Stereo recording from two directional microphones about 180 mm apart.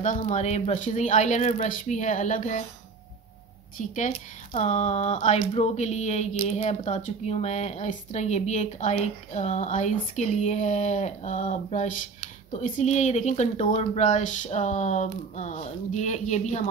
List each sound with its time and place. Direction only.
0.0 s speech: 45° left (ahead or behind)
3.7 s speech: 45° left (ahead or behind)